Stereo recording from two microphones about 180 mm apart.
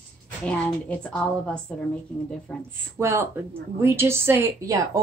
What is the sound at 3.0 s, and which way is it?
A woman's voice, 15° right (ahead or behind).